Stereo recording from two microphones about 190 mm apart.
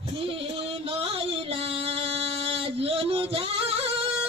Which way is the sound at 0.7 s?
30° right (ahead or behind).